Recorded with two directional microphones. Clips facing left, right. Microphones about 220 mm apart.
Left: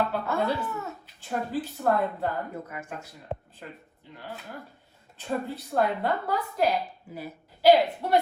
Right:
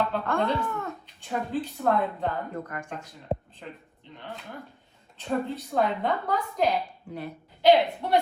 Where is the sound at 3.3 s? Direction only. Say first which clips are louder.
Right 5 dB; 35° right (ahead or behind).